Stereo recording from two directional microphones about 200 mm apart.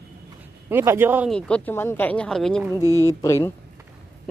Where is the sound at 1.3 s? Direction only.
10° left (ahead or behind).